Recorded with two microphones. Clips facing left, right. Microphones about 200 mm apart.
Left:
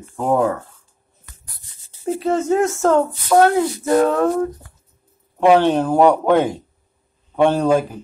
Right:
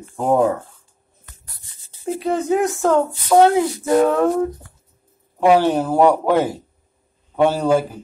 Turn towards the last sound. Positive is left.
turn(degrees=-10)  # may be behind; listen again after turning